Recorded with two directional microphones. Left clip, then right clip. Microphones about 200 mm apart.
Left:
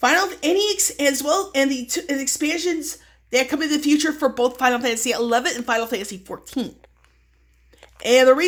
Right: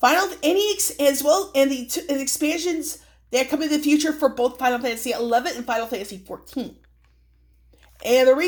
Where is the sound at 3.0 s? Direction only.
30° left (ahead or behind).